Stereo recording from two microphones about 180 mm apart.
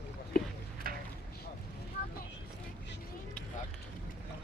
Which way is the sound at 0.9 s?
55° right (ahead or behind).